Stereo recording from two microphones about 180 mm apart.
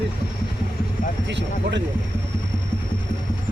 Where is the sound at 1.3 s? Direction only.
75° right (ahead or behind).